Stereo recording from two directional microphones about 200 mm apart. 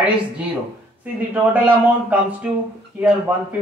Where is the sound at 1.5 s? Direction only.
10° right (ahead or behind).